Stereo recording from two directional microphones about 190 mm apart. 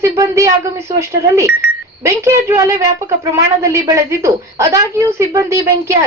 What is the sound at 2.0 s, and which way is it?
Speech, 15° right (ahead or behind).